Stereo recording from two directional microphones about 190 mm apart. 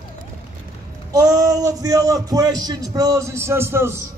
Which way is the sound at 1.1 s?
20° right (ahead or behind).